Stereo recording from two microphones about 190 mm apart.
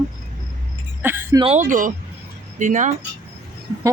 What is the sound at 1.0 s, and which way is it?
Speech, 10° right (ahead or behind).